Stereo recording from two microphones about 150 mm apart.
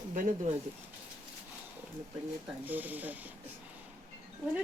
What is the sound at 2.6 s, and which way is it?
Speech, 10° right (ahead or behind).